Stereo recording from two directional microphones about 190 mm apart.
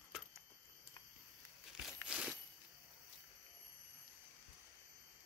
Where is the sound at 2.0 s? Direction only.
5° right (ahead or behind).